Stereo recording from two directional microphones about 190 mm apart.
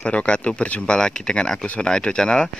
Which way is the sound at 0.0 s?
5° left (ahead or behind).